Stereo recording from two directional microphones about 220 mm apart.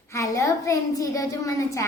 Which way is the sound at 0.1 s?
15° left (ahead or behind).